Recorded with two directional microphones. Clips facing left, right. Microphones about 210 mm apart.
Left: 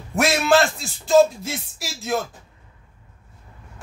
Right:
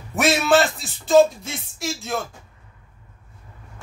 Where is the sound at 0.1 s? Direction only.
Centre (ahead or behind).